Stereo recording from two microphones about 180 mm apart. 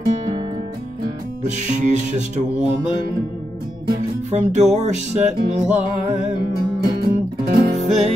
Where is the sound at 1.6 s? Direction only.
40° right (ahead or behind).